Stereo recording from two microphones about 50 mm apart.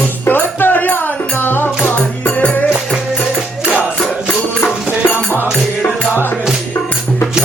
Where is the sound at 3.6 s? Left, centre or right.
Right.